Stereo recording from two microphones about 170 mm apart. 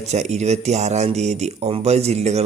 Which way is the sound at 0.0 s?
40° right (ahead or behind).